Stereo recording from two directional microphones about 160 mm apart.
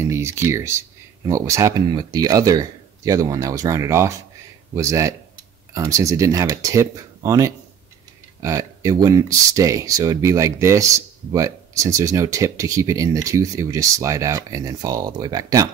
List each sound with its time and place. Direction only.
0.0 s speech: 15° right (ahead or behind)